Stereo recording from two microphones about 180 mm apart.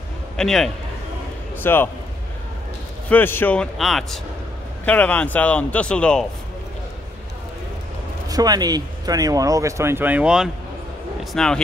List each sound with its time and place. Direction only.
0.4 s speech: centre (ahead or behind)
3.1 s speech: 10° left (ahead or behind)
8.3 s speech: 20° right (ahead or behind); by 11.6 s 5° left (ahead or behind)